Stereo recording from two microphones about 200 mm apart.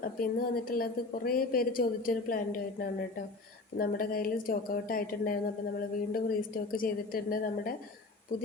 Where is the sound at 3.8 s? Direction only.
45° left (ahead or behind).